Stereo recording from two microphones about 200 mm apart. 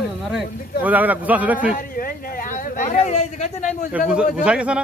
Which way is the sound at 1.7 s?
45° left (ahead or behind).